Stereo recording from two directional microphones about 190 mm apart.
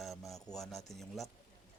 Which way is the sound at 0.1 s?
15° left (ahead or behind).